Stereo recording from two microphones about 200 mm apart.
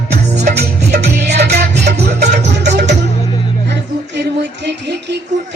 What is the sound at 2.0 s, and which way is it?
Music, 35° right (ahead or behind).